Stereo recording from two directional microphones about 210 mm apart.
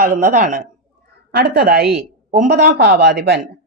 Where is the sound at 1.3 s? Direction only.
50° right (ahead or behind).